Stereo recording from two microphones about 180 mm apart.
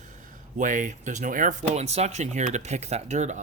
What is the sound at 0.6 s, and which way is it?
A man's voice, 45° right (ahead or behind).